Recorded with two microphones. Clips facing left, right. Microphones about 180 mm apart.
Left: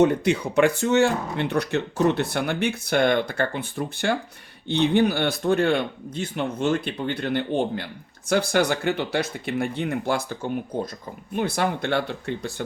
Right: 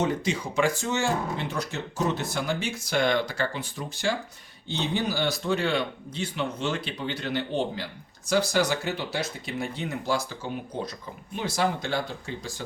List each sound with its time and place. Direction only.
0.0 s speech: 60° left (ahead or behind)
11.3 s speech: 60° left (ahead or behind)